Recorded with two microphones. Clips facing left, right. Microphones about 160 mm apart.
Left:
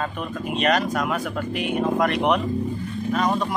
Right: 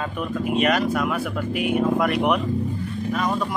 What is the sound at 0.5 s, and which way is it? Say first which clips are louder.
Speech: right 1 dB; 10° right (ahead or behind).